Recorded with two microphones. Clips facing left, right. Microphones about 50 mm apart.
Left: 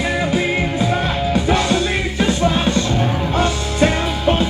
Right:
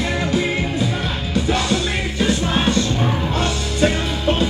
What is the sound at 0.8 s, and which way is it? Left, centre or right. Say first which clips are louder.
Music: left 4 dB; left.